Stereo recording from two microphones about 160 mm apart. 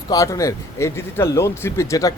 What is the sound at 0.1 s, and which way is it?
Speech, 20° left (ahead or behind).